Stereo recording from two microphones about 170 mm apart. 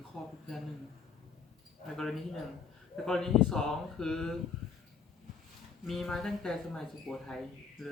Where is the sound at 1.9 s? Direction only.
5° left (ahead or behind).